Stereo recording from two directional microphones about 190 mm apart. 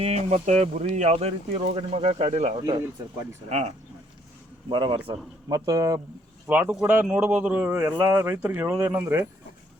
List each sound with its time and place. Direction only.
0.0 s speech: 35° right (ahead or behind)
4.7 s speech: 25° right (ahead or behind)